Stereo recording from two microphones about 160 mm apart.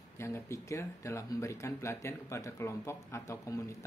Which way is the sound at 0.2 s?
15° left (ahead or behind).